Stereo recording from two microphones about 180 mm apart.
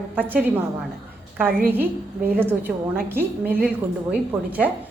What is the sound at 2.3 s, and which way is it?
A woman's voice, 10° right (ahead or behind).